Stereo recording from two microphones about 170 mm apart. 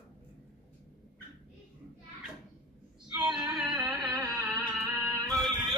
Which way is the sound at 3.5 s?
Centre (ahead or behind).